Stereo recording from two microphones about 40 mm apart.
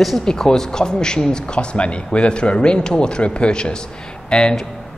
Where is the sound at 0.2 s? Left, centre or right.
Centre.